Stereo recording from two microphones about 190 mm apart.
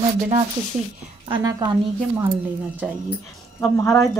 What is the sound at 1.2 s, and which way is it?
Speech, 25° right (ahead or behind).